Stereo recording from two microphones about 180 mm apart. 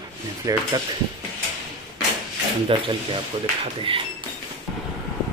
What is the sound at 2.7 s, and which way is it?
Speech, 30° right (ahead or behind).